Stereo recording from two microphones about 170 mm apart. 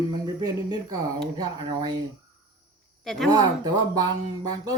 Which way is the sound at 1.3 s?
25° right (ahead or behind).